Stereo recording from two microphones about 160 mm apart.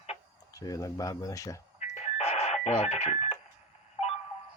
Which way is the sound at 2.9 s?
45° left (ahead or behind).